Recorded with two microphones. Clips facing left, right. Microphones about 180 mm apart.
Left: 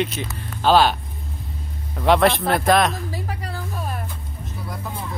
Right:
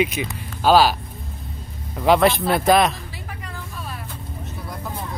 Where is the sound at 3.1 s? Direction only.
40° left (ahead or behind).